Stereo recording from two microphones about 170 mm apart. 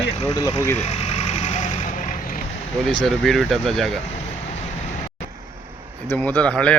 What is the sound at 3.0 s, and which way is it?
Speech, centre (ahead or behind).